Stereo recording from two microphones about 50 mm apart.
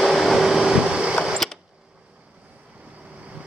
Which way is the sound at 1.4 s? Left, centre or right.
Centre.